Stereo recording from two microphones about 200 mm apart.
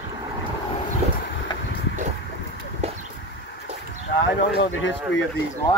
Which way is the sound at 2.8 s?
35° right (ahead or behind).